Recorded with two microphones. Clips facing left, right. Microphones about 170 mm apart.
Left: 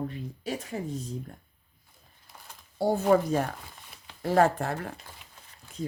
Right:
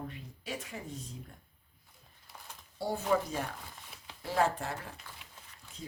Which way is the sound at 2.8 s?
45° left (ahead or behind).